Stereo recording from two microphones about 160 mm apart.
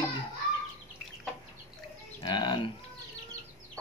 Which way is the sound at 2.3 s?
30° left (ahead or behind).